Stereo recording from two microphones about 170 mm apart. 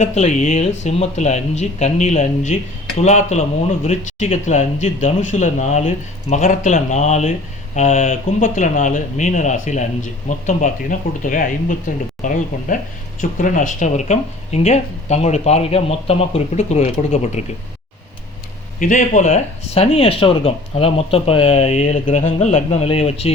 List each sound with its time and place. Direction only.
0.0 s speech: 40° left (ahead or behind)
18.8 s speech: 50° left (ahead or behind)